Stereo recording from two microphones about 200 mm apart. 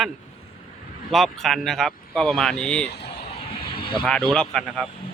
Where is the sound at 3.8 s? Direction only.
25° left (ahead or behind).